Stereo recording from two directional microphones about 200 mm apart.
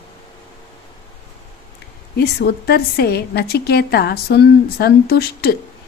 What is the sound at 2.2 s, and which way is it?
A woman's voice, 50° left (ahead or behind).